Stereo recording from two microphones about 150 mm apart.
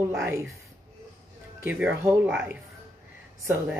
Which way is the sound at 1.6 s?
15° right (ahead or behind).